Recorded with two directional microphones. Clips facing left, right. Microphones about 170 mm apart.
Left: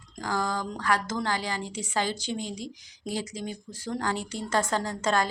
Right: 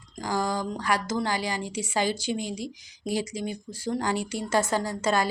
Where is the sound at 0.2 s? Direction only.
15° right (ahead or behind).